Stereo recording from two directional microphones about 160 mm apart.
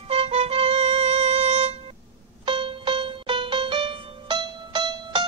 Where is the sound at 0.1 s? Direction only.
35° right (ahead or behind).